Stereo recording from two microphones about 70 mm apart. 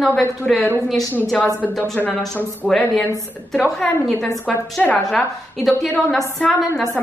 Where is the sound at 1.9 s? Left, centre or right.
Left.